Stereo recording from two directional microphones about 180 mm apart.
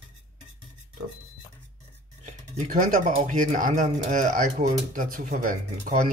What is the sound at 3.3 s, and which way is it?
Speech, 45° right (ahead or behind).